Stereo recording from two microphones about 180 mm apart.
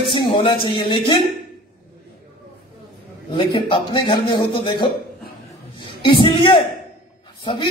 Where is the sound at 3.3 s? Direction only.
25° left (ahead or behind).